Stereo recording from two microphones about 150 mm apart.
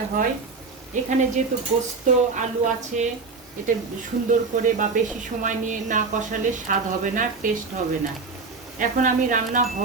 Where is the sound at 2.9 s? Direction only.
55° right (ahead or behind).